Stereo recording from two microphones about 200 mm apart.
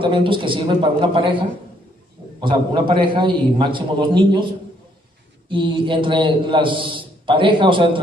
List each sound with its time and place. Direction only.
0.0 s a man's voice: 25° right (ahead or behind)
5.5 s a man's voice: 25° right (ahead or behind)